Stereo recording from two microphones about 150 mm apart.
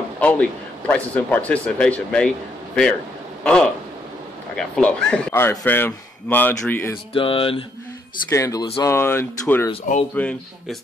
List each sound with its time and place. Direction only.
0.2 s speech: 10° left (ahead or behind)
7.2 s speech: 35° left (ahead or behind)
8.3 s speech: 20° left (ahead or behind)